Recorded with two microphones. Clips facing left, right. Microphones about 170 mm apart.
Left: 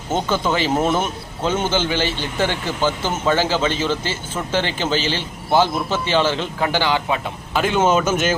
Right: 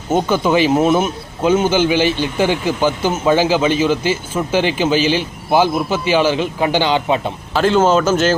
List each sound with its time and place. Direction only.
0.1 s speech: 15° right (ahead or behind)
7.6 s speech: 10° left (ahead or behind)